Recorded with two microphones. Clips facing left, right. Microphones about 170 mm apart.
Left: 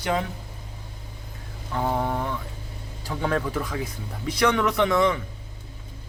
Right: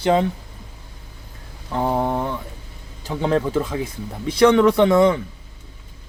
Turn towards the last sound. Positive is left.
turn(degrees=-30)  # may be behind; listen again after turning